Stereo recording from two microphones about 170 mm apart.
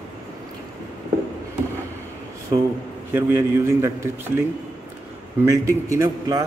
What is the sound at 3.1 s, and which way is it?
Speech, 15° right (ahead or behind).